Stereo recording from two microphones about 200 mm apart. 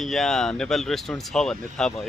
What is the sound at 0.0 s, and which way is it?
Speech, centre (ahead or behind).